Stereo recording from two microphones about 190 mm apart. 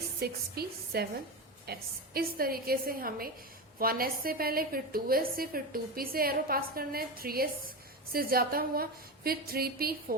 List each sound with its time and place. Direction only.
0.2 s a woman's voice: 55° right (ahead or behind)